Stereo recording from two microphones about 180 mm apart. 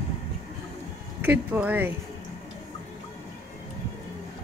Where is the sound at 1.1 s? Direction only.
10° right (ahead or behind).